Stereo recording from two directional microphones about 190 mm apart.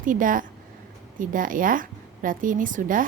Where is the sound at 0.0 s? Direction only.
45° right (ahead or behind).